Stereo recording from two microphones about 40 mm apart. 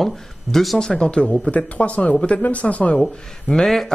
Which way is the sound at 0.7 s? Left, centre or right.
Centre.